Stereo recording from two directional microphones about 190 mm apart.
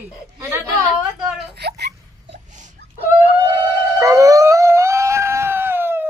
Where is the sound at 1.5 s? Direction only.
60° right (ahead or behind).